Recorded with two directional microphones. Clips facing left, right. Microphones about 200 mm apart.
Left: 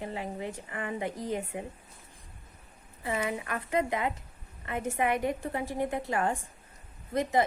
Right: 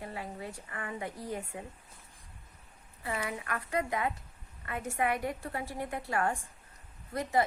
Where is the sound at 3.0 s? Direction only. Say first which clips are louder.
Left 4 dB; 20° left (ahead or behind).